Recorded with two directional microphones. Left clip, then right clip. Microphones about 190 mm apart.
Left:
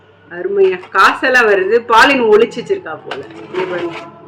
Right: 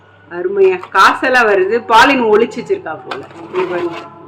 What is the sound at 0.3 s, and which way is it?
Speech, 15° right (ahead or behind).